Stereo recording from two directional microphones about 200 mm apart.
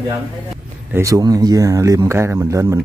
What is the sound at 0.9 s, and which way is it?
Speech, 15° right (ahead or behind).